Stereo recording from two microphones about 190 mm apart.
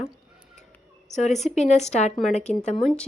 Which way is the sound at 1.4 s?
35° left (ahead or behind).